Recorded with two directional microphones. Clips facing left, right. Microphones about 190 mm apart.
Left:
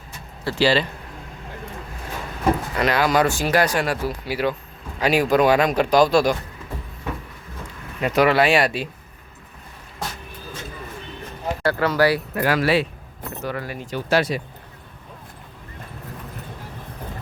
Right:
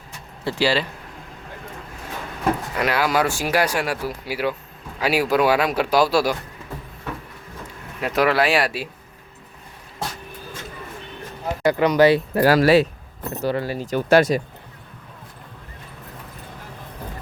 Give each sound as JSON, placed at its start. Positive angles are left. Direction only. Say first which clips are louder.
{"t": 0.6, "sound": "speech", "louder": "left 2 dB", "side_deg": -10}
{"t": 2.7, "sound": "speech", "louder": "left 1 dB", "side_deg": -10}
{"t": 8.0, "sound": "speech", "louder": "left 2 dB", "side_deg": 0}
{"t": 11.6, "sound": "speech", "louder": "right 4 dB", "side_deg": -15}
{"t": 13.9, "sound": "speech", "louder": "right 5 dB", "side_deg": -45}